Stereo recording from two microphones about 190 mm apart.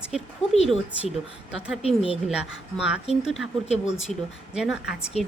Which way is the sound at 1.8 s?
30° left (ahead or behind).